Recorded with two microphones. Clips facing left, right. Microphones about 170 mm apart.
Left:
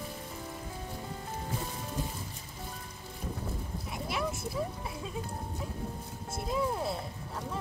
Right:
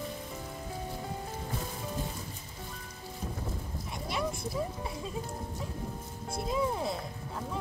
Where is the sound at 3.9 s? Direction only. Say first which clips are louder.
Even; centre (ahead or behind).